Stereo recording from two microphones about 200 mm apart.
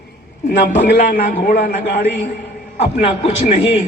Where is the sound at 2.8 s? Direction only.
30° left (ahead or behind).